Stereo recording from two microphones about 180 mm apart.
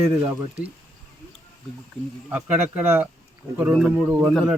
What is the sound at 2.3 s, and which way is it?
Speech, 10° right (ahead or behind).